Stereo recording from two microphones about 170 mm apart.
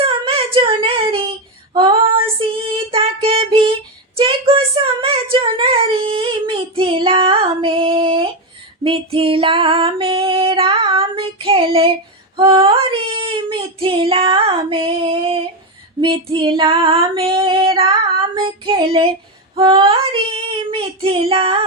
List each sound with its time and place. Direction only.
0.0 s a sound: 30° right (ahead or behind)
1.7 s female singing: 25° right (ahead or behind)
4.2 s child singing: 30° right (ahead or behind)
8.8 s music: 30° right (ahead or behind)
12.4 s child singing: 30° right (ahead or behind)
16.0 s female singing: 30° right (ahead or behind)
18.3 s child singing: 30° right (ahead or behind)
19.5 s female singing: 30° right (ahead or behind)
20.6 s child singing: 30° right (ahead or behind)